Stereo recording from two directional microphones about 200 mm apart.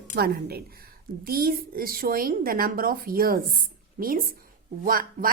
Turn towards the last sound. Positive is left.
turn(degrees=-45)  # may be behind; listen again after turning